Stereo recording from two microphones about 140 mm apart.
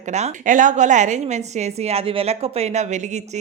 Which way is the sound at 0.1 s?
60° right (ahead or behind).